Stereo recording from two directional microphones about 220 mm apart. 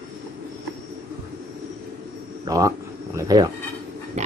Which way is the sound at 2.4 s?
15° right (ahead or behind).